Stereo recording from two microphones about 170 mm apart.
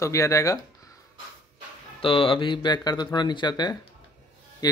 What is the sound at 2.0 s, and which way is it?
Mantra, 30° left (ahead or behind).